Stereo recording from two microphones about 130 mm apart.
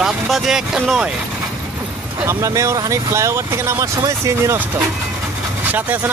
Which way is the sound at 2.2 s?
25° right (ahead or behind).